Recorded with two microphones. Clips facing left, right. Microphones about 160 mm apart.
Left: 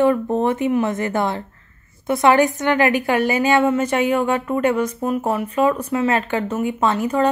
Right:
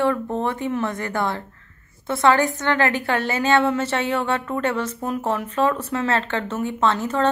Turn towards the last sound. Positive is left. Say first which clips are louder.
# left 2 dB
turn(degrees=10)  # may be behind; listen again after turning